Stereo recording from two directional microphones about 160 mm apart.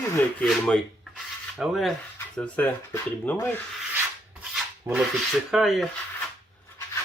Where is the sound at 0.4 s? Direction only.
5° left (ahead or behind).